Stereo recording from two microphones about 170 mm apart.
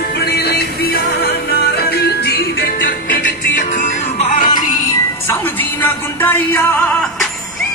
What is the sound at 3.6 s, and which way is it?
Music, 45° left (ahead or behind).